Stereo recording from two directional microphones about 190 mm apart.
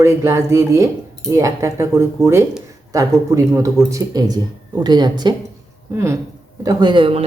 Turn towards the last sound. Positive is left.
turn(degrees=-30)  # may be behind; listen again after turning